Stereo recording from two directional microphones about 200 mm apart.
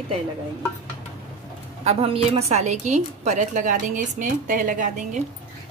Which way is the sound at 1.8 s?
30° right (ahead or behind).